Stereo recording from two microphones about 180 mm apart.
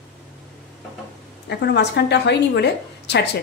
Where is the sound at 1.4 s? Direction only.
70° left (ahead or behind).